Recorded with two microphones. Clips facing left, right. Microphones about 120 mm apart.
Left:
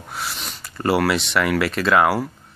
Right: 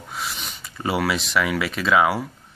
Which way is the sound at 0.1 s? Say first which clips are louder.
Left 1 dB; centre (ahead or behind).